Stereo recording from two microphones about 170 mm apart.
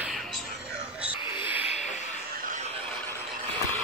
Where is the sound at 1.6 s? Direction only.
40° left (ahead or behind).